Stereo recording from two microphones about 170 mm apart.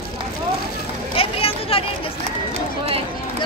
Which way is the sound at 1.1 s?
35° left (ahead or behind).